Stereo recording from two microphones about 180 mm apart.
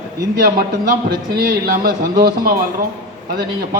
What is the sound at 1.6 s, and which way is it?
Speech, 55° right (ahead or behind).